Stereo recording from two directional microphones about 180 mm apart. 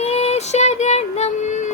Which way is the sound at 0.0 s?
35° left (ahead or behind).